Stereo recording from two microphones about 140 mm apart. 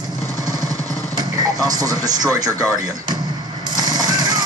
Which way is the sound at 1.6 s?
25° right (ahead or behind).